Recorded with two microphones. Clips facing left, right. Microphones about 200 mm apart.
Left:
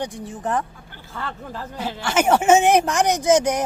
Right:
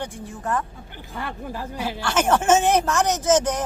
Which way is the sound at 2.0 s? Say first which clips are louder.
Left 3 dB; 10° left (ahead or behind).